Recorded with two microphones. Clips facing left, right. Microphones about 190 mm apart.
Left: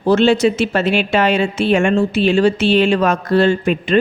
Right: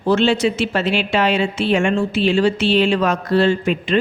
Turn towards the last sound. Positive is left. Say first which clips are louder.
# left 2 dB
turn(degrees=50)  # may be behind; listen again after turning